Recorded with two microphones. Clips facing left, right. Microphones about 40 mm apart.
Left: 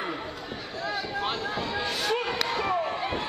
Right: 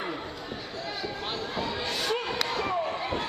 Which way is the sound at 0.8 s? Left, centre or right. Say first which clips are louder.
Left 5 dB; centre.